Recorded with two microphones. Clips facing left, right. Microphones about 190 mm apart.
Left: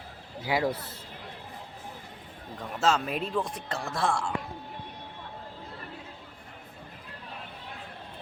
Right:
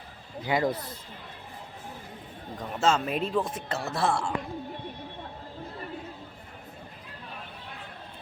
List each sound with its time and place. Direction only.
0.4 s speech: 5° left (ahead or behind)
2.8 s speech: centre (ahead or behind)